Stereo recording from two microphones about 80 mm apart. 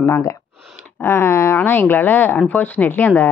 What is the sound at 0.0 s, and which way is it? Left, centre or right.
A woman's voice, left.